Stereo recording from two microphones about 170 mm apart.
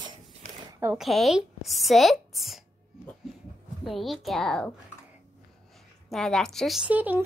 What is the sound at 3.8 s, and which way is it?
Speech, centre (ahead or behind).